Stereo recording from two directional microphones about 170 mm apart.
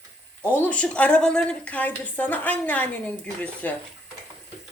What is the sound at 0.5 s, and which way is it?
Speech, 10° left (ahead or behind).